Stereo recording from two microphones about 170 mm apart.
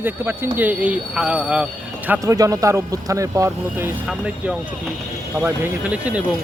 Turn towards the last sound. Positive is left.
turn(degrees=-5)  # may be behind; listen again after turning